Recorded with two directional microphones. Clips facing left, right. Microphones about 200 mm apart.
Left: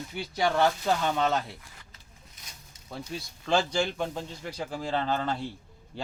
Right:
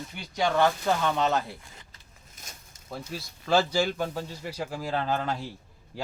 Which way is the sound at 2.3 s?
45° right (ahead or behind).